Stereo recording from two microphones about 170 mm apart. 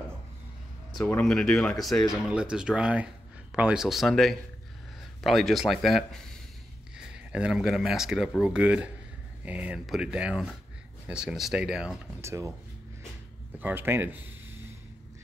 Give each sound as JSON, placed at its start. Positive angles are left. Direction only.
{"t": 0.9, "sound": "speech", "side_deg": 5}
{"t": 12.2, "sound": "speech", "side_deg": -15}
{"t": 13.6, "sound": "speech", "side_deg": -10}